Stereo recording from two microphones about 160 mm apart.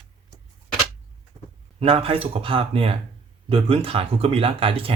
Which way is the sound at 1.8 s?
35° right (ahead or behind).